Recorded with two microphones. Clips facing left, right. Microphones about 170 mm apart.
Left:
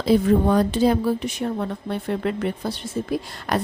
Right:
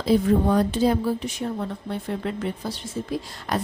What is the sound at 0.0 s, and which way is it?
A woman's voice, 75° left (ahead or behind).